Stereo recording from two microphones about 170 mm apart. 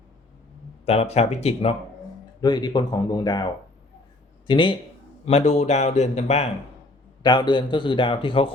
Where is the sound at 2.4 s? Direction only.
25° left (ahead or behind).